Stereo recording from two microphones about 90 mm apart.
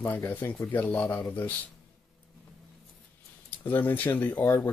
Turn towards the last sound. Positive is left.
turn(degrees=25)  # may be behind; listen again after turning